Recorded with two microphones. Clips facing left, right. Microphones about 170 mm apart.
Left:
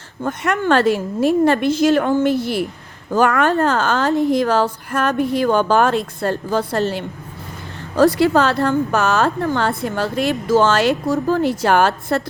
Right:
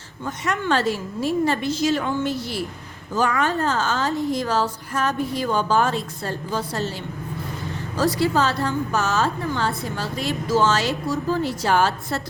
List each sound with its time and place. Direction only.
0.2 s a woman's voice: 60° left (ahead or behind)